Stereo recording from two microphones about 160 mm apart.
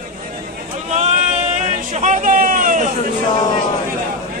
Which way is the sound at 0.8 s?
45° right (ahead or behind).